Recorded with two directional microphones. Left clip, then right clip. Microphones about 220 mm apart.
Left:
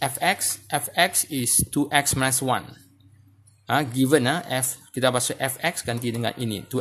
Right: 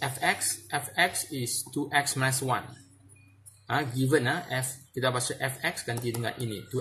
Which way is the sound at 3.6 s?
50° left (ahead or behind).